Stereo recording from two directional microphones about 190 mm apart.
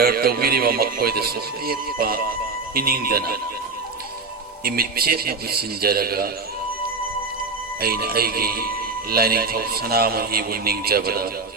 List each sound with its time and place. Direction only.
0.0 s speech: 55° right (ahead or behind)
4.6 s speech: 50° right (ahead or behind)
7.8 s speech: 55° right (ahead or behind)